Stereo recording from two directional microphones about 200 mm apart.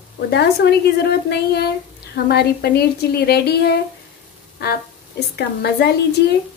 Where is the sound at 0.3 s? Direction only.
55° left (ahead or behind).